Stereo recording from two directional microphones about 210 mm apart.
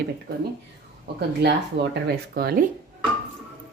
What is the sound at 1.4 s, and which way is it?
Speech, 55° right (ahead or behind).